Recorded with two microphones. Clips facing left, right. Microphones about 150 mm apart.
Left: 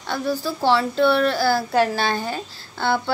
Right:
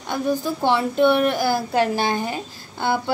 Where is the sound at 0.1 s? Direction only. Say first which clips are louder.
Right 2 dB; 20° right (ahead or behind).